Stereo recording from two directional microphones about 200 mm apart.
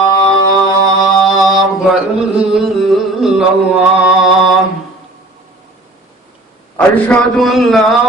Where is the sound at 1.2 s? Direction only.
Centre (ahead or behind).